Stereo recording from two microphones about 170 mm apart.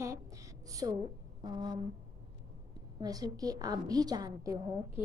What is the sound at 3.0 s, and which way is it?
A woman's voice, 25° right (ahead or behind).